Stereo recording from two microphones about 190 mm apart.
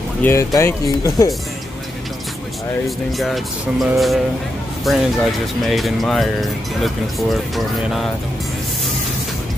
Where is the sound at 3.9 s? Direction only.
Centre (ahead or behind).